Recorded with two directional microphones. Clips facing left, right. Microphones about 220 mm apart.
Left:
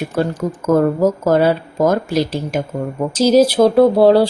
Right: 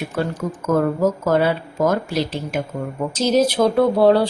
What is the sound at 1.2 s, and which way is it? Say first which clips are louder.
A woman's voice: left 4 dB; 40° left (ahead or behind).